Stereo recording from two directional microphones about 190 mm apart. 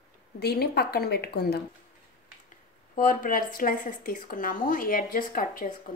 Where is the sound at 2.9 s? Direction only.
45° left (ahead or behind).